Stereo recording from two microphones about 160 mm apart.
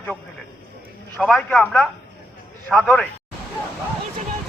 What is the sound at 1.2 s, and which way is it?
A man's voice, 5° left (ahead or behind).